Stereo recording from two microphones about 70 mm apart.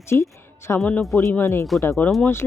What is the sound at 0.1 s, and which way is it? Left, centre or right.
Speech, left.